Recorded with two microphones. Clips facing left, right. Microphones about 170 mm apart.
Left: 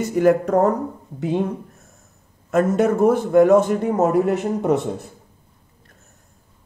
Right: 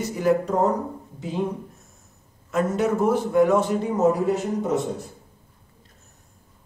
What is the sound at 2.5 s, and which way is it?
A man's voice, 55° left (ahead or behind).